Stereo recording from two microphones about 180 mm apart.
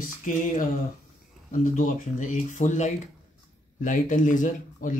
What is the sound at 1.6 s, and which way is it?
Speech, 45° left (ahead or behind).